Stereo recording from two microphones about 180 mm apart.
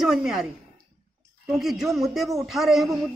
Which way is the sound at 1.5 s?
Centre (ahead or behind).